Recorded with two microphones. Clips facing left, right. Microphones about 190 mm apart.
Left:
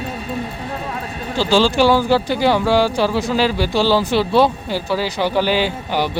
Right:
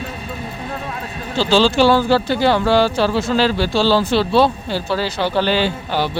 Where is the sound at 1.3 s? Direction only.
15° left (ahead or behind).